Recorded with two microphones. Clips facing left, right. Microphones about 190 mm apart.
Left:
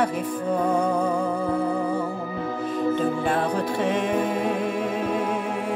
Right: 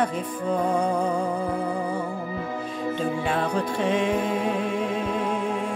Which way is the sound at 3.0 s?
55° left (ahead or behind).